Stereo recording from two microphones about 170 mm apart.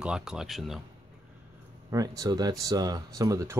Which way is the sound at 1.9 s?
20° right (ahead or behind).